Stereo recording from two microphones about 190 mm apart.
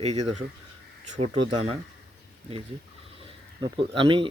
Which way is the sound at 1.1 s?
30° right (ahead or behind).